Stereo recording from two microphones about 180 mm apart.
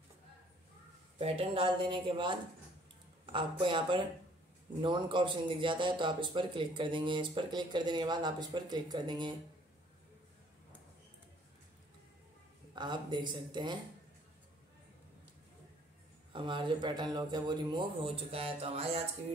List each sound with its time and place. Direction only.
1.1 s speech: 30° right (ahead or behind)
12.7 s speech: 25° right (ahead or behind)
16.3 s speech: 25° right (ahead or behind)